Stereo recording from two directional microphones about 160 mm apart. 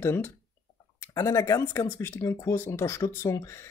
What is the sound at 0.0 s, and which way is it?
Speech, 15° left (ahead or behind).